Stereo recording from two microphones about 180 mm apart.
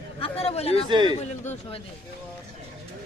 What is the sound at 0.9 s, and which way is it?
Speech, 25° right (ahead or behind).